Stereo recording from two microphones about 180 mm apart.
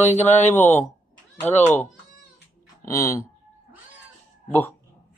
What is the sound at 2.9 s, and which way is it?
Speech, 15° left (ahead or behind).